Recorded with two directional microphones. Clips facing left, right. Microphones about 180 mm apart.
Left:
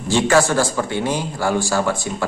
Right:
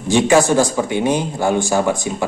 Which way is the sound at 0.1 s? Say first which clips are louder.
Right 3 dB; 15° right (ahead or behind).